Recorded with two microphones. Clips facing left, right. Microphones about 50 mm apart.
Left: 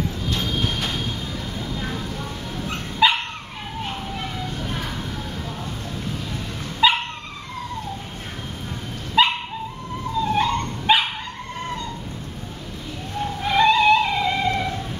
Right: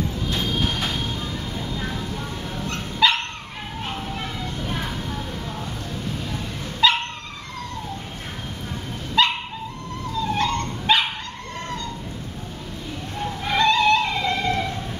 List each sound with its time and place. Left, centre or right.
0.6 s train: centre
1.6 s vehicle: centre
2.6 s dog: centre
3.8 s children playing: centre
6.8 s dog: centre
9.2 s dog: centre
13.2 s music: centre